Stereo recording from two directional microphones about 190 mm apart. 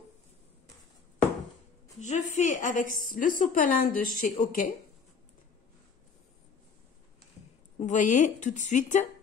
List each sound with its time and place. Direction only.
2.0 s a woman's voice: 40° left (ahead or behind)
7.8 s a woman's voice: 40° left (ahead or behind)